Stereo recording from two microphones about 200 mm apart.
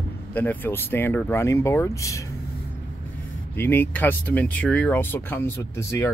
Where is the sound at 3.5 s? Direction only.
10° left (ahead or behind).